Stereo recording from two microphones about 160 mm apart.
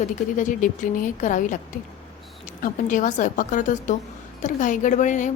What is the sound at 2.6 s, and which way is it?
A woman's voice, 55° left (ahead or behind).